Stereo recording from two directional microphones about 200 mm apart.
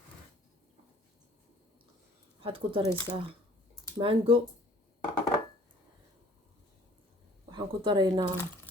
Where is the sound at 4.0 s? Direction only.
25° right (ahead or behind).